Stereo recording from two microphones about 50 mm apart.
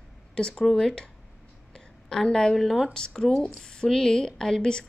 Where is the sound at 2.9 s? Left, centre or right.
Centre.